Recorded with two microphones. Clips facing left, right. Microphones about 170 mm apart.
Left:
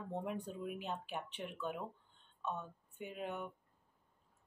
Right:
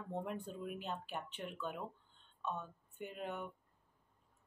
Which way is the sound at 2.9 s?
Centre (ahead or behind).